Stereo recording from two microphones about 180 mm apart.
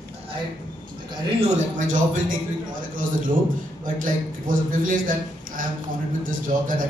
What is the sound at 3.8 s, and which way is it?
A man's voice, 50° right (ahead or behind).